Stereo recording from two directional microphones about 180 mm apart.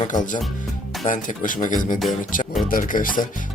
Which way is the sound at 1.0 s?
45° left (ahead or behind).